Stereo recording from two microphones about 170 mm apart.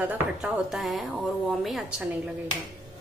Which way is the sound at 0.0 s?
5° right (ahead or behind).